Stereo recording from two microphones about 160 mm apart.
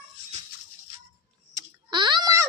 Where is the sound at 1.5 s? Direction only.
30° right (ahead or behind).